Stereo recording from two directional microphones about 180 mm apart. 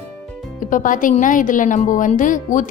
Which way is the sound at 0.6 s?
45° left (ahead or behind).